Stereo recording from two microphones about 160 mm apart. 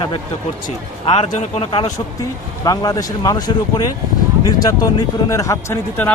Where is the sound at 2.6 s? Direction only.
25° left (ahead or behind).